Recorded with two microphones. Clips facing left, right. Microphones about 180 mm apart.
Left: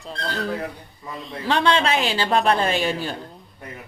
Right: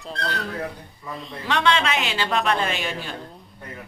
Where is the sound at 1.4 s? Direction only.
30° left (ahead or behind).